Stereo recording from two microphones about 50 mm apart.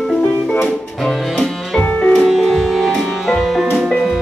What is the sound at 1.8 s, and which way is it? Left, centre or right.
Music, left.